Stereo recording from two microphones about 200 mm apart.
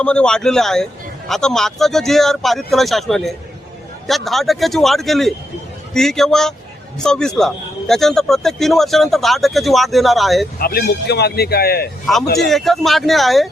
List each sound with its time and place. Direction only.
0.0 s a man's voice: 5° left (ahead or behind)
10.6 s a man's voice: 50° left (ahead or behind)
12.5 s a man's voice: centre (ahead or behind)